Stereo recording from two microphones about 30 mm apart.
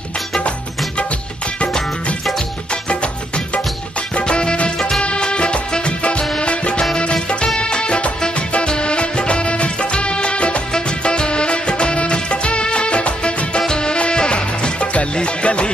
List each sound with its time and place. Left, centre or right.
2.7 s music: left
4.1 s music: left
13.6 s music: left